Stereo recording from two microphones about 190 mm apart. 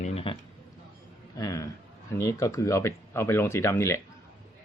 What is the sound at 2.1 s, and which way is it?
Speech, 15° left (ahead or behind).